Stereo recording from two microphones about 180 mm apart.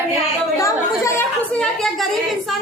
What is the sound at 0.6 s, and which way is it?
Chatter, 15° left (ahead or behind).